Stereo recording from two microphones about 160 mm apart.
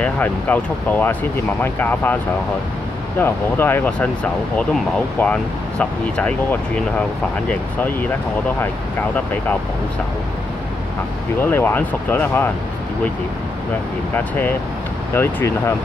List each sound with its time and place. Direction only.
0.0 s speech: 10° left (ahead or behind)
3.2 s speech: 15° left (ahead or behind)
11.4 s speech: 10° left (ahead or behind)
15.1 s speech: 15° left (ahead or behind)